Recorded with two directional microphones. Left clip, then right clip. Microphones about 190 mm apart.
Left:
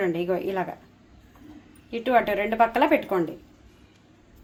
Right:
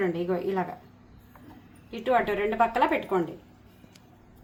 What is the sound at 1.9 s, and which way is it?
A woman's voice, 25° left (ahead or behind).